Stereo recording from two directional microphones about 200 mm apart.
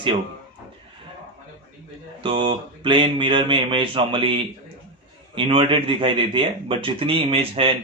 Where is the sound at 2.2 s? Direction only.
25° right (ahead or behind).